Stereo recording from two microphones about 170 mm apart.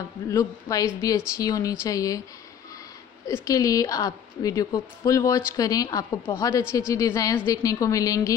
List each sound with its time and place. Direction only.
0.3 s a woman's voice: 20° left (ahead or behind)
3.4 s a woman's voice: 20° left (ahead or behind)